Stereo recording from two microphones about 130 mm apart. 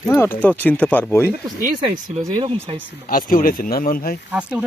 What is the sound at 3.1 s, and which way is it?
Speech, 90° left.